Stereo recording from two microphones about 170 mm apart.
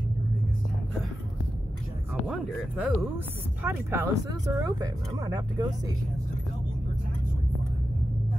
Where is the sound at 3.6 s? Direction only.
15° right (ahead or behind).